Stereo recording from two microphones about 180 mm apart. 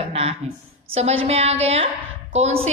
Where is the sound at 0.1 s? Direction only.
35° right (ahead or behind).